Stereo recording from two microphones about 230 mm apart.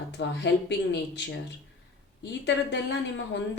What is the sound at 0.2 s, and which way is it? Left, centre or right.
Speech, left.